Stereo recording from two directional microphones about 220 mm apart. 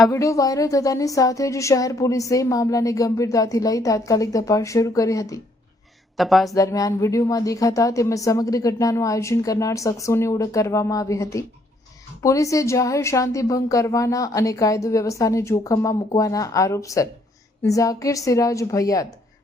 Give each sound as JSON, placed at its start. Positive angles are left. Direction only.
{"t": 0.1, "sound": "a woman's voice", "side_deg": 15}
{"t": 6.1, "sound": "speech", "side_deg": 0}
{"t": 6.5, "sound": "a woman's voice", "side_deg": 15}